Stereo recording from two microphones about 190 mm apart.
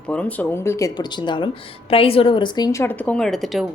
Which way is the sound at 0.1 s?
5° left (ahead or behind).